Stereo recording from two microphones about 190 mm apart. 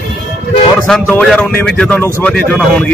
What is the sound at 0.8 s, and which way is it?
Speech, 5° left (ahead or behind).